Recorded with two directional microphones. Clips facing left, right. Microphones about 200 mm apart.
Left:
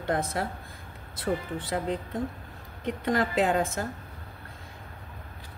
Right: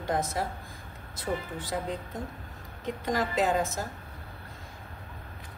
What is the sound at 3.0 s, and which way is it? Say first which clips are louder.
Speech: left 2 dB; 60° left (ahead or behind).